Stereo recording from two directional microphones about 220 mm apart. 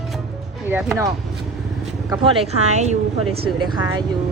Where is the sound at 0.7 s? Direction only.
5° right (ahead or behind).